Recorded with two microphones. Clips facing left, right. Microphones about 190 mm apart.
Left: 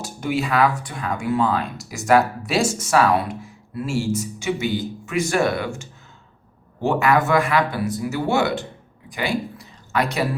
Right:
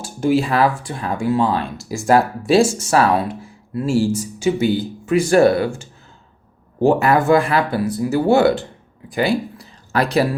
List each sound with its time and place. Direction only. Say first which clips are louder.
0.0 s speech: right 7 dB; 30° right (ahead or behind)